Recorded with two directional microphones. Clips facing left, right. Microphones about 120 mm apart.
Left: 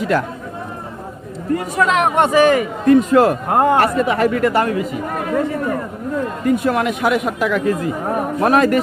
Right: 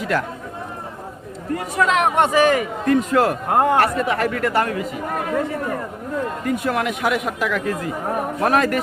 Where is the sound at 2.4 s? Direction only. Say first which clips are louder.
Left 3 dB; 25° left (ahead or behind).